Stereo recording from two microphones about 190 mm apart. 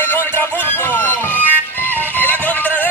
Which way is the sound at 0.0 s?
10° left (ahead or behind).